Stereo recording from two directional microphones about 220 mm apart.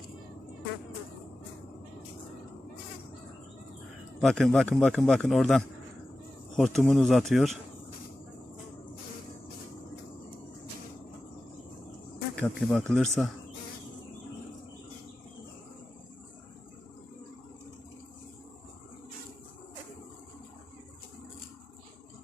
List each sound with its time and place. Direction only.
4.2 s a man's voice: centre (ahead or behind)
12.4 s a man's voice: 5° left (ahead or behind)